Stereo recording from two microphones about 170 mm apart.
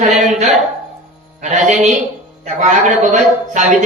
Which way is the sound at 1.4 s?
45° right (ahead or behind).